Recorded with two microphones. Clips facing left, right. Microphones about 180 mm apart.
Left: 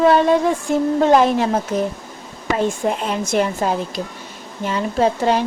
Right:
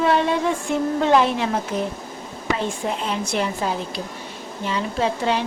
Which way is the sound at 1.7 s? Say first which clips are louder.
Left 4 dB; 40° left (ahead or behind).